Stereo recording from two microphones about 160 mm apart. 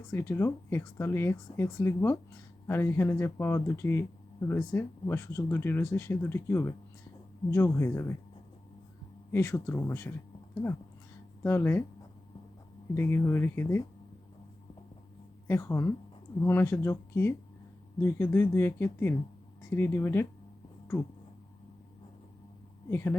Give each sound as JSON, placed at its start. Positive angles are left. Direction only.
{"t": 0.1, "sound": "speech", "side_deg": 15}
{"t": 9.3, "sound": "speech", "side_deg": 20}
{"t": 12.9, "sound": "speech", "side_deg": 15}
{"t": 15.4, "sound": "speech", "side_deg": 15}
{"t": 22.9, "sound": "speech", "side_deg": 15}